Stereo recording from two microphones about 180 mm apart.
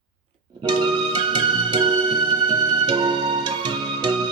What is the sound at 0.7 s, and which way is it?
Music, 25° right (ahead or behind).